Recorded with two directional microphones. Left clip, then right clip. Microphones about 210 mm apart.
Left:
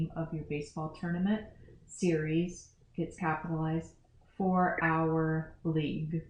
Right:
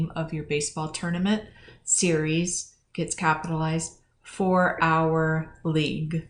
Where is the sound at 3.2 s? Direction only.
20° right (ahead or behind).